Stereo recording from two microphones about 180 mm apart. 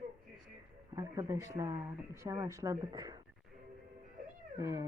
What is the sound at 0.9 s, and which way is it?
Speech, 20° right (ahead or behind).